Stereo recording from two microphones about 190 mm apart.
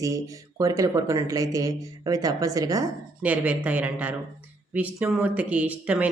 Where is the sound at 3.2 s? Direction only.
10° right (ahead or behind).